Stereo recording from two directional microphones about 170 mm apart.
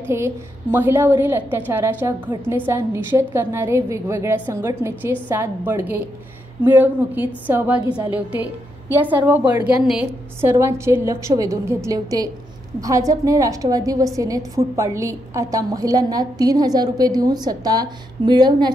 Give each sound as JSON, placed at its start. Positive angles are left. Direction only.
{"t": 0.1, "sound": "a woman's voice", "side_deg": -15}